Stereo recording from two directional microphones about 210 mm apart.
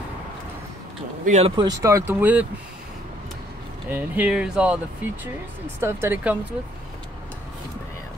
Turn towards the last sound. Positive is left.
turn(degrees=-10)  # may be behind; listen again after turning